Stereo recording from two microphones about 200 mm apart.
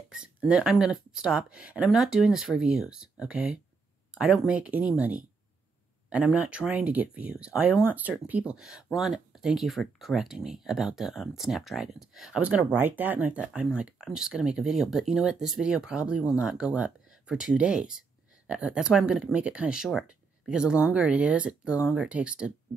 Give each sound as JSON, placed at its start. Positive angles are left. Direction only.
{"t": 0.1, "sound": "speech", "side_deg": -5}